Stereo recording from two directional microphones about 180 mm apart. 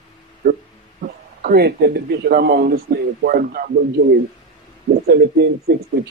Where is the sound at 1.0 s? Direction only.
60° right (ahead or behind).